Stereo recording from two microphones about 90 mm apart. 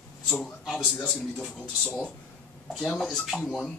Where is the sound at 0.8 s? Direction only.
15° left (ahead or behind).